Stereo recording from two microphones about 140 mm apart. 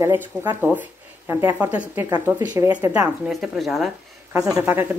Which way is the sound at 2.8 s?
15° right (ahead or behind).